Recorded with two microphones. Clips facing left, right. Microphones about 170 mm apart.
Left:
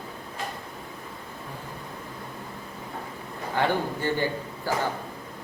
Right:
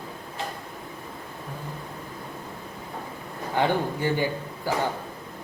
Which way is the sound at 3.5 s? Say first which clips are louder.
Right 1 dB; 15° right (ahead or behind).